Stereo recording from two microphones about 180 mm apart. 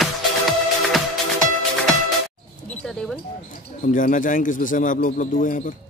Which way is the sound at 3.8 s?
50° left (ahead or behind).